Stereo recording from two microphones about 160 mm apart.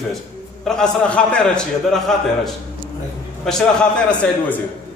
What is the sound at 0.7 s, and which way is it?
A man's voice, centre (ahead or behind).